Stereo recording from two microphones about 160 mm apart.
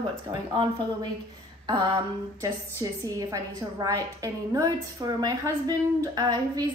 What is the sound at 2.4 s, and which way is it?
A woman's voice, 20° right (ahead or behind).